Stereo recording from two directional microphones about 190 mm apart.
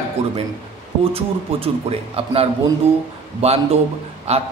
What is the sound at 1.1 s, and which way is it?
A man's voice, 30° right (ahead or behind).